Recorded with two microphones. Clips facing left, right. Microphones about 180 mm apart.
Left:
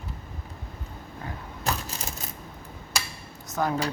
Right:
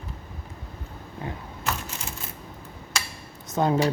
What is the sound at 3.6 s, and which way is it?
Speech, 25° right (ahead or behind).